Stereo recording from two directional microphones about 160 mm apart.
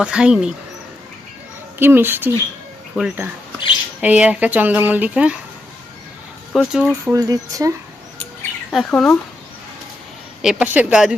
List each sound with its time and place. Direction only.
0.0 s a woman's voice: 5° right (ahead or behind)
1.8 s speech: 15° right (ahead or behind)
6.5 s a woman's voice: centre (ahead or behind)
7.1 s speech: 20° right (ahead or behind)
8.7 s speech: 5° left (ahead or behind)
10.4 s a woman's voice: 5° right (ahead or behind)